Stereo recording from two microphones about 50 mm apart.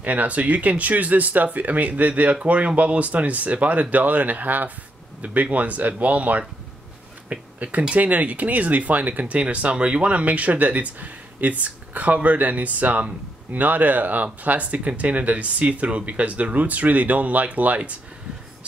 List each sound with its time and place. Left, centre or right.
0.0 s speech: right